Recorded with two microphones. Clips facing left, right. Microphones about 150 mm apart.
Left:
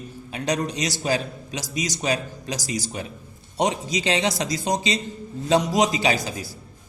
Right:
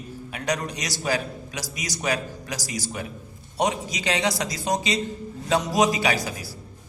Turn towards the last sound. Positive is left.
turn(degrees=20)  # may be behind; listen again after turning